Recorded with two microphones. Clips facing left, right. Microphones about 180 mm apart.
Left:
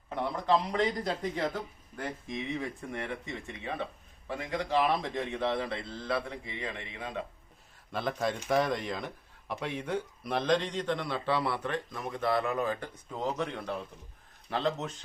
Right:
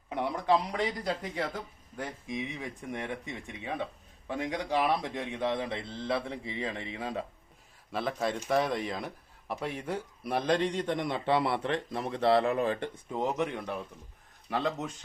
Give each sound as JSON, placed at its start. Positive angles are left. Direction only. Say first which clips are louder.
{"t": 0.1, "sound": "speech", "louder": "right 1 dB", "side_deg": -15}
{"t": 7.9, "sound": "speech", "louder": "even", "side_deg": 0}